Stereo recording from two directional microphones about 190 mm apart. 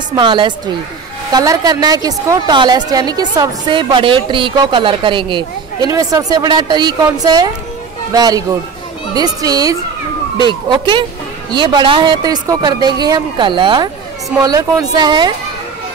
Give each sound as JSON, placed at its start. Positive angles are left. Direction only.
{"t": 0.1, "sound": "a woman's voice", "side_deg": -25}